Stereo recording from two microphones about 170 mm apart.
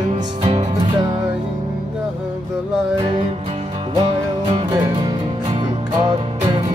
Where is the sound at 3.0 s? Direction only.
35° right (ahead or behind).